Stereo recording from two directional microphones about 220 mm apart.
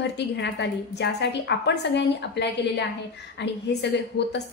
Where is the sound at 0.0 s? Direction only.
50° left (ahead or behind).